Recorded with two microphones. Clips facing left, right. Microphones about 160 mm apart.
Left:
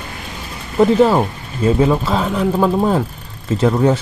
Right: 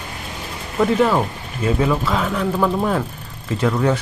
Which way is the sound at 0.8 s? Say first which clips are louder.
Left 5 dB; 30° left (ahead or behind).